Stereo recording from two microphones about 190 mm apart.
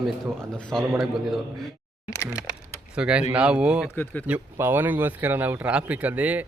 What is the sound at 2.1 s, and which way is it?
Speech, 15° left (ahead or behind).